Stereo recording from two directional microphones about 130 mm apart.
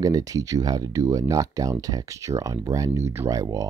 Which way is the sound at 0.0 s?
25° right (ahead or behind).